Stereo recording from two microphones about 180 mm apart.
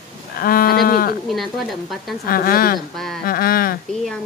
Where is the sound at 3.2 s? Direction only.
55° left (ahead or behind).